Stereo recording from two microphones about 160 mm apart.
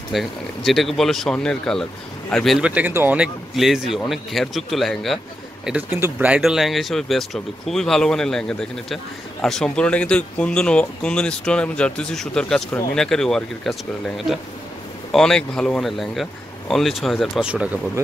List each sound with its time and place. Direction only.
0.1 s speech: centre (ahead or behind)
5.7 s speech: 10° right (ahead or behind)